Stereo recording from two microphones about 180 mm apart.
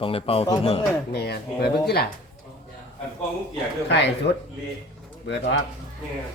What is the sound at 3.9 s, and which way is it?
Speech, 75° left (ahead or behind).